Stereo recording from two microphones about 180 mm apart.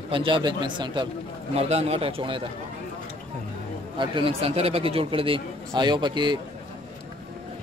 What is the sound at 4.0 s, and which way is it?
Speech, 30° right (ahead or behind).